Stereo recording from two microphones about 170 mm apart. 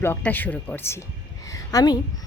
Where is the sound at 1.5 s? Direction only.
20° left (ahead or behind).